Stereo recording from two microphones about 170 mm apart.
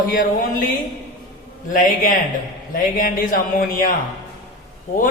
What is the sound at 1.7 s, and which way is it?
A man's voice, 50° left (ahead or behind).